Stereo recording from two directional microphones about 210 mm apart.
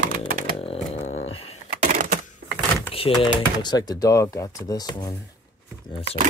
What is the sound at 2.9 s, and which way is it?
Speech, 25° left (ahead or behind).